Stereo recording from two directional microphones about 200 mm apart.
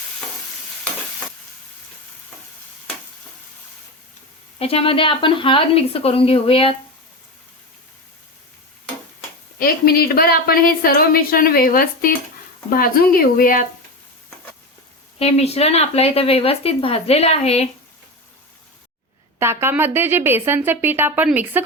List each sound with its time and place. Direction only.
4.6 s a woman's voice: 30° left (ahead or behind)
9.6 s a woman's voice: 45° left (ahead or behind)
15.2 s speech: 30° left (ahead or behind)
19.4 s speech: 10° right (ahead or behind)